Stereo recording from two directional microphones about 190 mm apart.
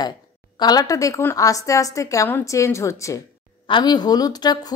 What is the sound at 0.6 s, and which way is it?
A woman's voice, 20° left (ahead or behind).